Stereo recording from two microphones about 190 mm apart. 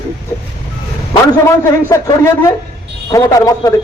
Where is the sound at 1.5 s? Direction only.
15° left (ahead or behind).